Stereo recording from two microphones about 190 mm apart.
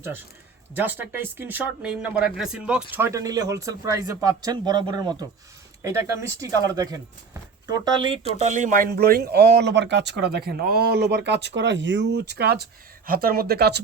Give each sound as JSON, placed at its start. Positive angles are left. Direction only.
{"t": 0.8, "sound": "speech", "side_deg": -10}
{"t": 8.4, "sound": "speech", "side_deg": -40}